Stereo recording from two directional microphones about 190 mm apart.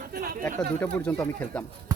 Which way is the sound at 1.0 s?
10° left (ahead or behind).